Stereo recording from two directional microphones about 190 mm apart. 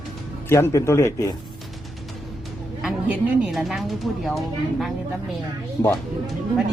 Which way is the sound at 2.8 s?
5° right (ahead or behind).